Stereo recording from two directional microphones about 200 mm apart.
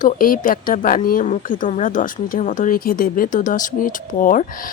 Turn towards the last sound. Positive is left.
turn(degrees=40)  # may be behind; listen again after turning